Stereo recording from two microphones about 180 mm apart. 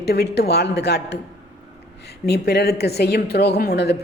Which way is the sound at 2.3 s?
65° left (ahead or behind).